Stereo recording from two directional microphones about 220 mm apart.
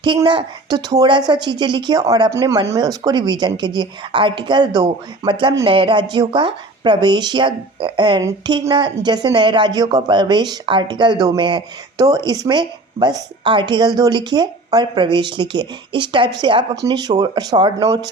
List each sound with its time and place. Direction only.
0.0 s a woman's voice: 20° right (ahead or behind)